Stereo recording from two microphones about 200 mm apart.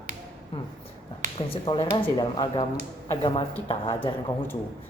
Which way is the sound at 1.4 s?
25° left (ahead or behind).